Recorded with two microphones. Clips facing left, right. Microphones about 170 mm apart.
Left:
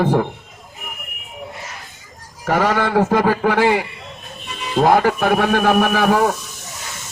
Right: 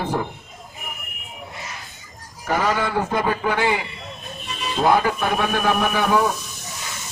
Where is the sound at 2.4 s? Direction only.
75° left (ahead or behind).